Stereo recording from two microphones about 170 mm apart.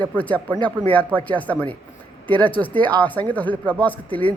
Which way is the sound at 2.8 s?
10° left (ahead or behind).